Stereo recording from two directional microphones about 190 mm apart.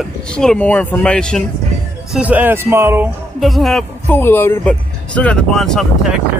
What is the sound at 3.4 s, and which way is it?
Speech, centre (ahead or behind).